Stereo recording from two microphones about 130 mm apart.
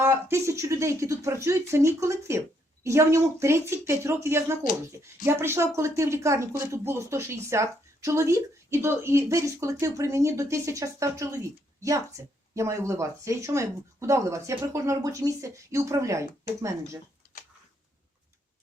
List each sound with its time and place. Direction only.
0.0 s speech: 20° right (ahead or behind)